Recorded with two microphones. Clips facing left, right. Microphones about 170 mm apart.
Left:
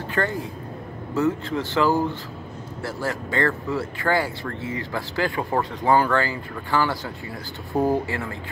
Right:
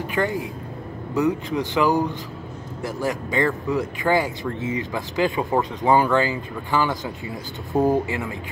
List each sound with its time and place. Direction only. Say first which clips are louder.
0.1 s speech: right 1 dB; 15° right (ahead or behind)